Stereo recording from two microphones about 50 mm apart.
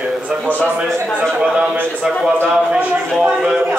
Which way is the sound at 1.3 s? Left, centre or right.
Right.